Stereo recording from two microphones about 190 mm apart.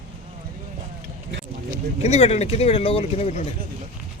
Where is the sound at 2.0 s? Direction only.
35° left (ahead or behind).